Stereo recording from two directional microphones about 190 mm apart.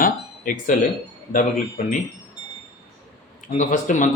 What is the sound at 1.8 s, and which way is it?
Speech, 40° left (ahead or behind).